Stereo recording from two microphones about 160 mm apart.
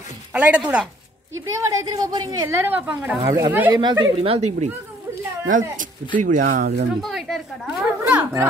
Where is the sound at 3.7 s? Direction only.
25° right (ahead or behind).